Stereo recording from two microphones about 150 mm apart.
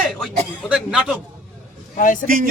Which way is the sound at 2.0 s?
60° left (ahead or behind).